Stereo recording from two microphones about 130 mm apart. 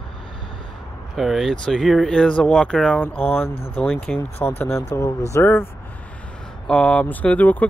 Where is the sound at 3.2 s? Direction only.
15° left (ahead or behind).